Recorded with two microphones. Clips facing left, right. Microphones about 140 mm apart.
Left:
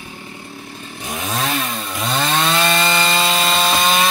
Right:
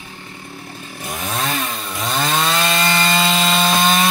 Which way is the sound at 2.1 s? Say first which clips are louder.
Left 1 dB; centre (ahead or behind).